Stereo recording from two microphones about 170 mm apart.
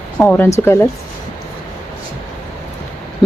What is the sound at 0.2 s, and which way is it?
Speech, 10° left (ahead or behind).